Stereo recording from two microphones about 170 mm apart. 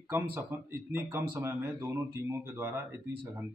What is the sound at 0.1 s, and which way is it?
Speech, 15° right (ahead or behind).